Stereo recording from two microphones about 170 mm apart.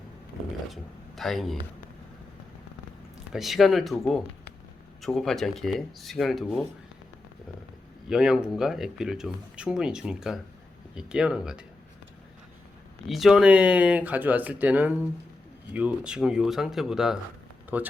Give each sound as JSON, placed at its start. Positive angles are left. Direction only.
{"t": 0.7, "sound": "speech", "side_deg": 0}
{"t": 3.3, "sound": "speech", "side_deg": 0}
{"t": 8.0, "sound": "speech", "side_deg": -5}
{"t": 13.1, "sound": "speech", "side_deg": 0}